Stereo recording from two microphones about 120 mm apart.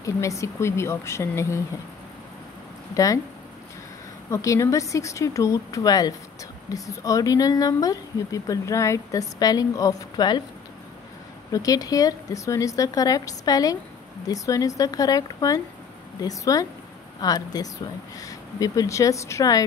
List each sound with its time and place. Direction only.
0.0 s speech: 25° left (ahead or behind)
2.9 s speech: 30° left (ahead or behind)
4.3 s speech: 25° left (ahead or behind)
11.5 s speech: 30° left (ahead or behind)